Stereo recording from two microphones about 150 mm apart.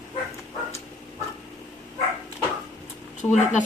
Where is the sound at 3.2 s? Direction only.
15° left (ahead or behind).